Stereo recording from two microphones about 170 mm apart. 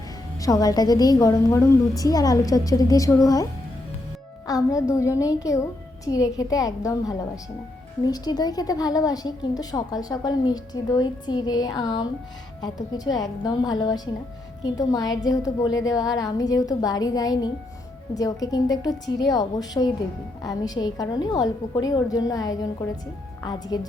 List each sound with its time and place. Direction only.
0.3 s a woman's voice: 20° left (ahead or behind)
4.4 s a woman's voice: 20° left (ahead or behind)